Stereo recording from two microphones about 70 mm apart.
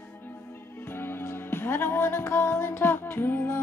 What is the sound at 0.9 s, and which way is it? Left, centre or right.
Music, left.